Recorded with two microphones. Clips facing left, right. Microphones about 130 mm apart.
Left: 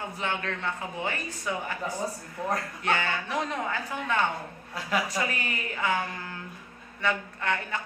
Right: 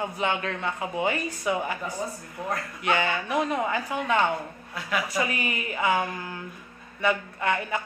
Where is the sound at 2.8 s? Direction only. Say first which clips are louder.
Right 4 dB; 15° right (ahead or behind).